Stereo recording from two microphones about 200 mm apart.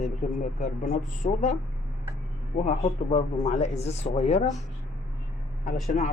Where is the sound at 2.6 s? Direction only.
35° left (ahead or behind).